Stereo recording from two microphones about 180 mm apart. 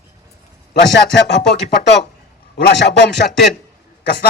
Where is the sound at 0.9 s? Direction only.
70° left (ahead or behind).